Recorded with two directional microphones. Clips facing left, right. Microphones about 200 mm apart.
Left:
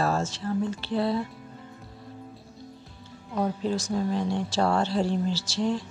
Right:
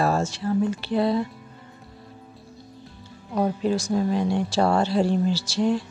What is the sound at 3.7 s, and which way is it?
Speech, 10° right (ahead or behind).